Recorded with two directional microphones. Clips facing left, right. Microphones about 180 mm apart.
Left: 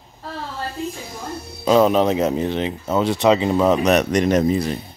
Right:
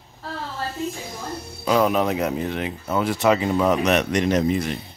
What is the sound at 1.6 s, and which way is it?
Speech, 25° left (ahead or behind).